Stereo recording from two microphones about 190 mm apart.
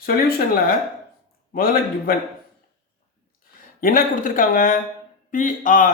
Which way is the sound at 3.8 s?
50° left (ahead or behind).